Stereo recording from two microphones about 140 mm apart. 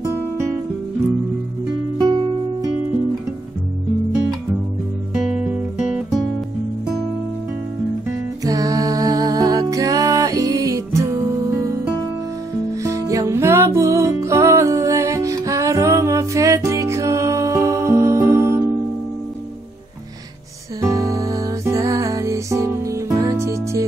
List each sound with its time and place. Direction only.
2.0 s music: 35° right (ahead or behind)
5.1 s music: 5° right (ahead or behind)
8.5 s music: 25° right (ahead or behind)
12.8 s music: 20° right (ahead or behind)
20.8 s music: 25° right (ahead or behind)